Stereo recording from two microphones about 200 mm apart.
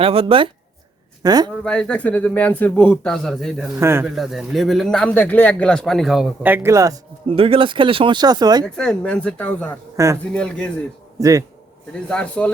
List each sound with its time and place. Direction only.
0.0 s a man's voice: 30° right (ahead or behind)
1.6 s a man's voice: 5° left (ahead or behind)
3.8 s speech: 10° right (ahead or behind)
4.1 s a man's voice: centre (ahead or behind); by 7.0 s 15° right (ahead or behind)
7.3 s speech: 30° right (ahead or behind)
8.6 s a man's voice: 5° left (ahead or behind)
10.0 s speech: 15° right (ahead or behind)
10.3 s a man's voice: 5° left (ahead or behind)
11.2 s speech: 15° right (ahead or behind)
11.9 s a man's voice: 5° left (ahead or behind)